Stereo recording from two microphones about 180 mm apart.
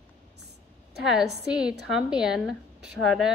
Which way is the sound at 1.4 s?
5° right (ahead or behind).